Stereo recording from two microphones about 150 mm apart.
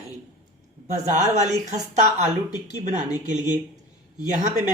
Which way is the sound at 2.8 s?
55° right (ahead or behind).